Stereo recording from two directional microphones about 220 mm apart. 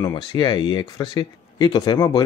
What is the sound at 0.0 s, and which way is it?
Speech, 20° left (ahead or behind).